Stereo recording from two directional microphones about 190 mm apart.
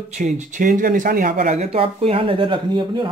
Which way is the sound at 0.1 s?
40° right (ahead or behind).